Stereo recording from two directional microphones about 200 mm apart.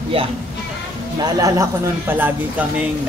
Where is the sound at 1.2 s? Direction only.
15° right (ahead or behind).